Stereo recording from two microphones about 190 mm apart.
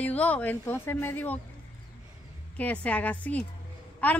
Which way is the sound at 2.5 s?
10° left (ahead or behind).